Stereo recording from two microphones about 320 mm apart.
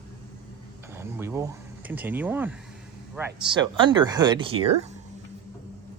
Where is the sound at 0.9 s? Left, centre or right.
Centre.